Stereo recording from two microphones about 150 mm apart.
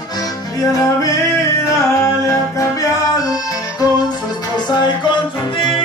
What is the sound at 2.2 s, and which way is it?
Music, 20° left (ahead or behind).